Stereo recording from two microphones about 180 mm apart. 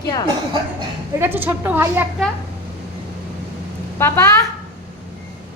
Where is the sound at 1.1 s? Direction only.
10° right (ahead or behind).